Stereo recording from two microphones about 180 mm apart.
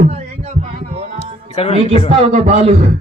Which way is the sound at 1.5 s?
35° left (ahead or behind).